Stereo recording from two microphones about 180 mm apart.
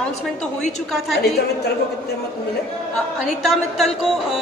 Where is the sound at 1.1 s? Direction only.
65° left (ahead or behind).